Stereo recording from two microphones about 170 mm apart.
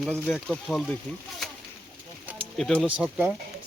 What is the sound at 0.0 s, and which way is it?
Speech, 5° left (ahead or behind).